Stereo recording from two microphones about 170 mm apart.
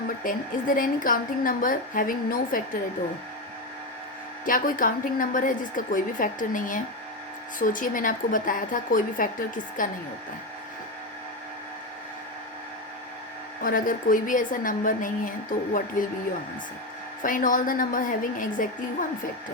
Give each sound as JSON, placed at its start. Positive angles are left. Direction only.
{"t": 0.3, "sound": "a woman's voice", "side_deg": 55}
{"t": 4.4, "sound": "a woman's voice", "side_deg": 55}
{"t": 13.6, "sound": "a woman's voice", "side_deg": 55}
{"t": 17.2, "sound": "a woman's voice", "side_deg": 50}